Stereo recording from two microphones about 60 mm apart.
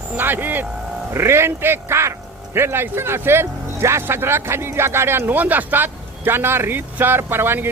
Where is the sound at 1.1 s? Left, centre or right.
Right.